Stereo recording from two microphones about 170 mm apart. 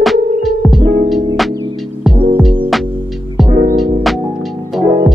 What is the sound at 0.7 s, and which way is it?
Music, 65° right (ahead or behind).